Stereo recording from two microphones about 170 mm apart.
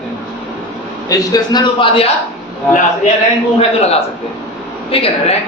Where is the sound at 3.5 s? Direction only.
35° left (ahead or behind).